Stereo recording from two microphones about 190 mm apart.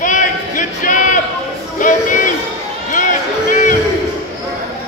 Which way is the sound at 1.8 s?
45° left (ahead or behind).